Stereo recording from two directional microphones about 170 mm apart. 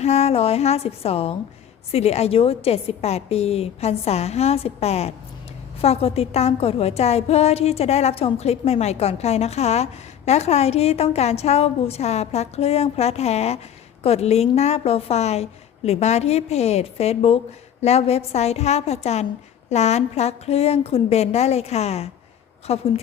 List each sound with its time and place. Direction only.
0.0 s a woman's voice: 40° left (ahead or behind)